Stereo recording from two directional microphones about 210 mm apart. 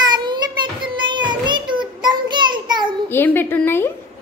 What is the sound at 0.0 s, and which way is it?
Child singing, 20° right (ahead or behind).